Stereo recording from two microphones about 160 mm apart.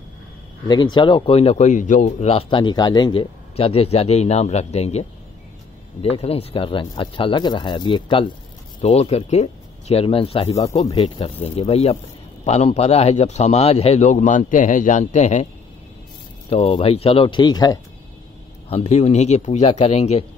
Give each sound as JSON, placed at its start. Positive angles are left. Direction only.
{"t": 0.7, "sound": "speech", "side_deg": 25}
{"t": 6.0, "sound": "speech", "side_deg": 40}
{"t": 8.8, "sound": "a man's voice", "side_deg": 40}
{"t": 16.4, "sound": "speech", "side_deg": 35}
{"t": 18.7, "sound": "a man's voice", "side_deg": 40}